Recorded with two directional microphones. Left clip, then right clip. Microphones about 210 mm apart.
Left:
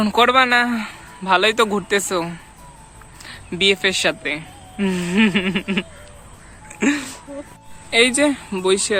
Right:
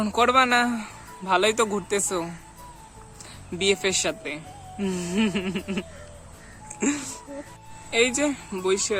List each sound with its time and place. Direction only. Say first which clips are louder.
0.0 s speech: left 5 dB; centre (ahead or behind)
6.7 s a sound: left 7 dB; 5° right (ahead or behind)
7.9 s speech: left 7 dB; centre (ahead or behind)